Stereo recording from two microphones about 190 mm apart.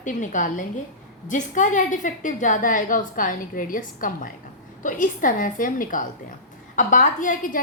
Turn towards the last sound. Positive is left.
turn(degrees=45)  # may be behind; listen again after turning